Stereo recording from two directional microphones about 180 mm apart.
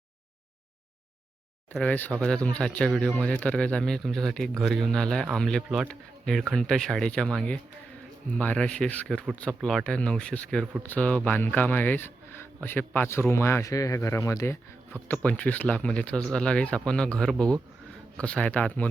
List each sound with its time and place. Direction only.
1.7 s a man's voice: 10° left (ahead or behind)